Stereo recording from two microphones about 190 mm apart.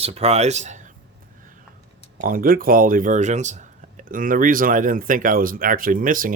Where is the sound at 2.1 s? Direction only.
50° right (ahead or behind).